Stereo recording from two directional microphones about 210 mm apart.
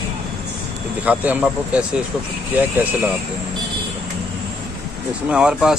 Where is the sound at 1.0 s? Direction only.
5° right (ahead or behind).